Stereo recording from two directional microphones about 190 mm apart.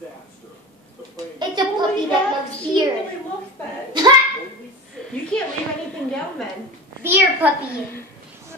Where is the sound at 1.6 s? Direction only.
25° right (ahead or behind).